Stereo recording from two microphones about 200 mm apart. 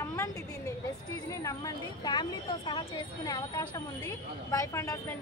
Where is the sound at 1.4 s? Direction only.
20° left (ahead or behind).